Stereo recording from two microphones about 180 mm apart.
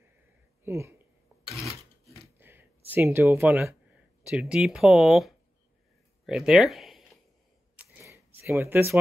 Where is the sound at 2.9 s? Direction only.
15° right (ahead or behind).